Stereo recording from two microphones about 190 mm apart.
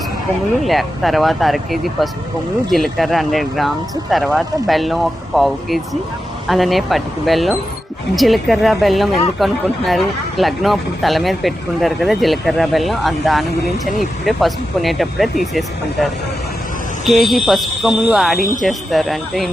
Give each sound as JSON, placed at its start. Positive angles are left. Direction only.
{"t": 0.6, "sound": "speech", "side_deg": 0}
{"t": 18.3, "sound": "speech", "side_deg": 45}
{"t": 18.6, "sound": "speech", "side_deg": 0}